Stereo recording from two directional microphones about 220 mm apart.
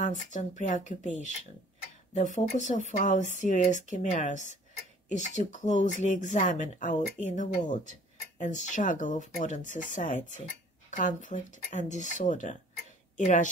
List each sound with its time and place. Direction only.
0.0 s speech: 35° left (ahead or behind)